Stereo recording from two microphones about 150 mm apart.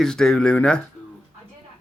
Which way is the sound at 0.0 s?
5° left (ahead or behind).